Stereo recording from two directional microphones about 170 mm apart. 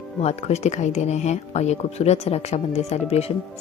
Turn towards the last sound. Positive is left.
turn(degrees=40)  # may be behind; listen again after turning